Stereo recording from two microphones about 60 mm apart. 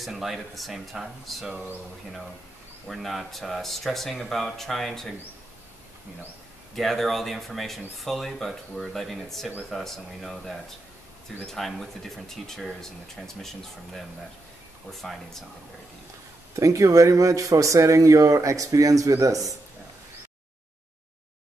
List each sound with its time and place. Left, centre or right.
0.0 s speech: centre
1.5 s speech: right
2.9 s speech: centre
6.7 s speech: centre
16.5 s speech: right